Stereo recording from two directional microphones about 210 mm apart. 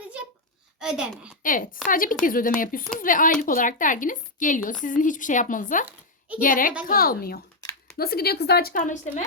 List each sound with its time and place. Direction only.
0.0 s a sound: 5° right (ahead or behind)
0.8 s a child's voice: 5° right (ahead or behind)
1.4 s a woman's voice: 40° left (ahead or behind)